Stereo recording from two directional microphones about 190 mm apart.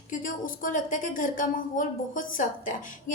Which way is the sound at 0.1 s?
45° left (ahead or behind).